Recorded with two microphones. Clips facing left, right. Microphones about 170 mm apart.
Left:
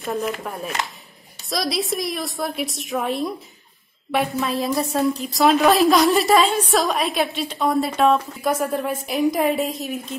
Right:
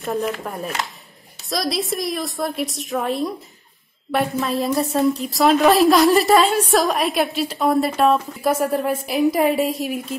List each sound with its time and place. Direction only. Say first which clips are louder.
0.0 s a woman's voice: right 2 dB; centre (ahead or behind)